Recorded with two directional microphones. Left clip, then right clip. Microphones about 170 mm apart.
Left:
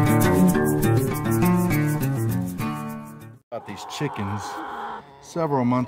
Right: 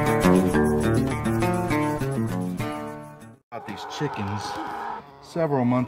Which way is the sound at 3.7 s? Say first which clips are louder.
Right 1 dB; 60° left (ahead or behind).